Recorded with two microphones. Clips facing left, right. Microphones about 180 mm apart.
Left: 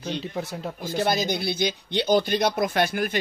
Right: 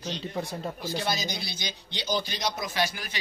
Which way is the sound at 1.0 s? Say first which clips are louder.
Left 7 dB; 55° left (ahead or behind).